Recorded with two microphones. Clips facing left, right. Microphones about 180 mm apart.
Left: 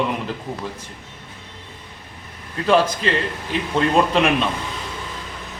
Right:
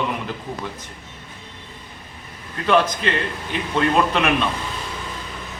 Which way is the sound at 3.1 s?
35° left (ahead or behind).